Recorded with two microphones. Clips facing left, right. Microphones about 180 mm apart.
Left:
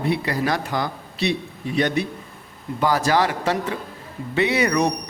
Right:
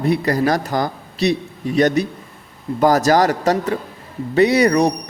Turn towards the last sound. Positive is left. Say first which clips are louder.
# right 6 dB
turn(degrees=-35)  # may be behind; listen again after turning